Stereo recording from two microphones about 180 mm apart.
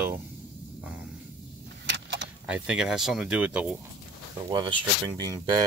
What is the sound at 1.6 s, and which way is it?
Vehicle, 70° right (ahead or behind).